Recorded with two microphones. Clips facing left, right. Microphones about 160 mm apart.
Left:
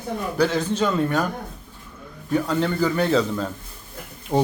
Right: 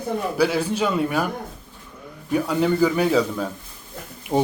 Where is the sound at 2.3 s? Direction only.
10° right (ahead or behind).